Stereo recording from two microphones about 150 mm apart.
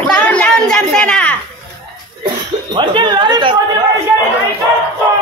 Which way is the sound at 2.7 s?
30° right (ahead or behind).